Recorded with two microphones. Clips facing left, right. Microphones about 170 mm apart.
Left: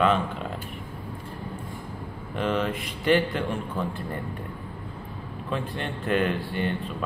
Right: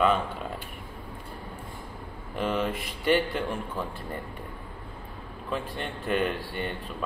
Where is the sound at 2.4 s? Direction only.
Centre (ahead or behind).